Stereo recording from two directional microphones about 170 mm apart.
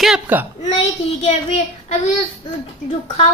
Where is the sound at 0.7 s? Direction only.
40° left (ahead or behind).